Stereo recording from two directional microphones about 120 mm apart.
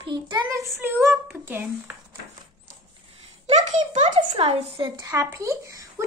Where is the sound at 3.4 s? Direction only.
80° right.